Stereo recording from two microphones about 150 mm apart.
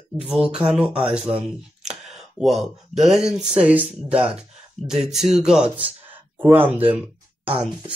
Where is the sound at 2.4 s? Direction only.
Centre (ahead or behind).